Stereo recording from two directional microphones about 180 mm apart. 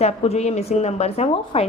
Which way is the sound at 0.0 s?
35° left (ahead or behind).